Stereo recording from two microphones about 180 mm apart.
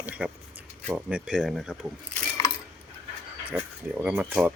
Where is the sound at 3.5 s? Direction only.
5° right (ahead or behind).